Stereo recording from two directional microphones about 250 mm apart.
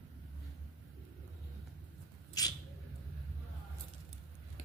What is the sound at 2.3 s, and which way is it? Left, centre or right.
Mouse, centre.